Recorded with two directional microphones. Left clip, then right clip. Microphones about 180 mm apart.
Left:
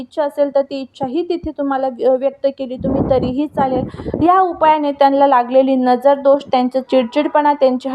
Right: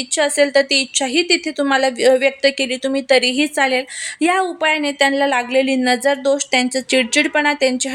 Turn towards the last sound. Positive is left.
turn(degrees=-5)  # may be behind; listen again after turning